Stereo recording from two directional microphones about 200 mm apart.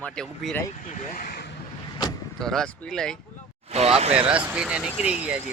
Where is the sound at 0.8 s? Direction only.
35° left (ahead or behind).